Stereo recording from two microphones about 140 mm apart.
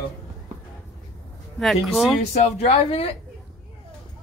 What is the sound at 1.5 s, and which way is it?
Speech, centre (ahead or behind).